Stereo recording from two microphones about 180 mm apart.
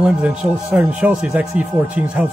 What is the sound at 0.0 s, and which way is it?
Speech, 5° right (ahead or behind).